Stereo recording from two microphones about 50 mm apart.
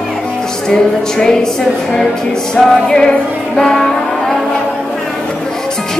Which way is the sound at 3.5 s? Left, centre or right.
Centre.